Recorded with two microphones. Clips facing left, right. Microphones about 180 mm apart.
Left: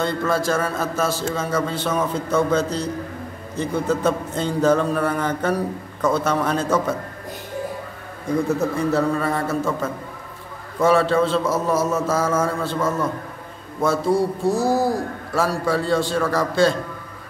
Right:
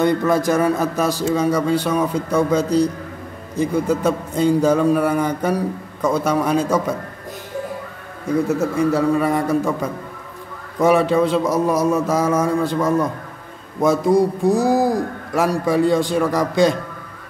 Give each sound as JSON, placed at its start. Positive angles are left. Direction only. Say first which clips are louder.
{"t": 0.0, "sound": "a man's voice", "louder": "right 5 dB", "side_deg": -15}
{"t": 8.5, "sound": "a man's voice", "louder": "right 3 dB", "side_deg": -10}